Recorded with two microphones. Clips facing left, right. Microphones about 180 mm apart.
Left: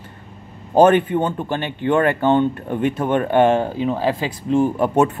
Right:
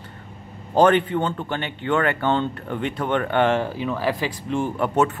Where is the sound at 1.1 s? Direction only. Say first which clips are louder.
Left 4 dB; 20° left (ahead or behind).